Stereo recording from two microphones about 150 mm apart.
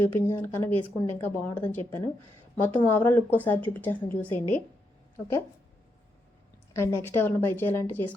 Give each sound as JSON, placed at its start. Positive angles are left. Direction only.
{"t": 0.0, "sound": "speech", "side_deg": 15}
{"t": 6.7, "sound": "speech", "side_deg": 15}